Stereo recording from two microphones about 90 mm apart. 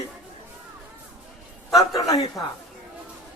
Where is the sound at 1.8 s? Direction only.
40° left (ahead or behind).